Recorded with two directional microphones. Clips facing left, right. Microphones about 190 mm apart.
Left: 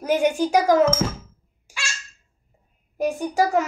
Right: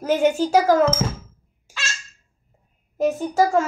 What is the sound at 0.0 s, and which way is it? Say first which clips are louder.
Speech: right 1 dB; 15° left (ahead or behind).